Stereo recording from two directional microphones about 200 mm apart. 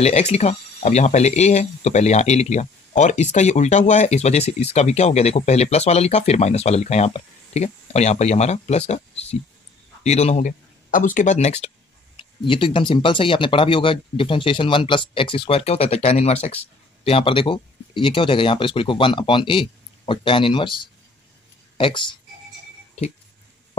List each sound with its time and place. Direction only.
0.0 s speech: 30° left (ahead or behind)